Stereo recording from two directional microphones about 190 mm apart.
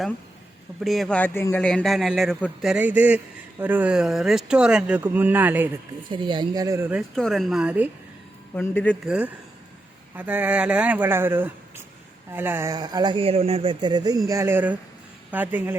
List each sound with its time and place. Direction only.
0.8 s a man's voice: centre (ahead or behind)
6.1 s speech: 25° right (ahead or behind)
7.2 s a man's voice: centre (ahead or behind)
8.5 s speech: 10° left (ahead or behind)
9.0 s speech: 5° right (ahead or behind)